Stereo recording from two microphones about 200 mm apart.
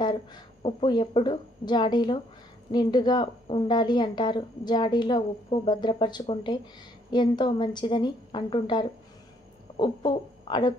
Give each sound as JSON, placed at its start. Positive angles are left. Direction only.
{"t": 0.0, "sound": "a woman's voice", "side_deg": 25}